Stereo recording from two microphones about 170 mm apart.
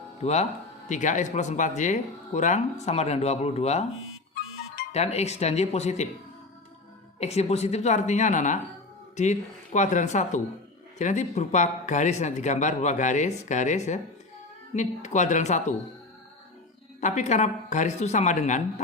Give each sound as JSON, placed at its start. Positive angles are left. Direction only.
{"t": 0.2, "sound": "speech", "side_deg": 40}
{"t": 4.9, "sound": "speech", "side_deg": 40}
{"t": 7.2, "sound": "speech", "side_deg": 40}
{"t": 17.0, "sound": "speech", "side_deg": 45}